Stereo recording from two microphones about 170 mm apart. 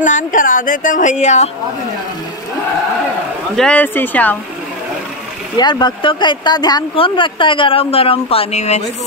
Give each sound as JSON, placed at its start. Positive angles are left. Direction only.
{"t": 0.0, "sound": "speech", "side_deg": 50}
{"t": 3.5, "sound": "speech", "side_deg": 5}
{"t": 5.6, "sound": "speech", "side_deg": 25}